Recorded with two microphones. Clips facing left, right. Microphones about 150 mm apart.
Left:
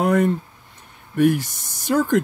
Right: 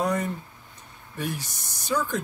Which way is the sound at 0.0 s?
55° left (ahead or behind).